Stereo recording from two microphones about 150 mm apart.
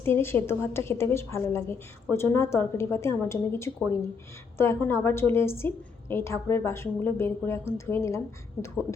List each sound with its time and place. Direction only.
0.0 s a woman's voice: 15° left (ahead or behind)
8.6 s speech: 40° left (ahead or behind)